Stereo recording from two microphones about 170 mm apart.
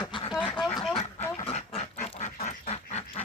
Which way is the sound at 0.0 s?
25° left (ahead or behind).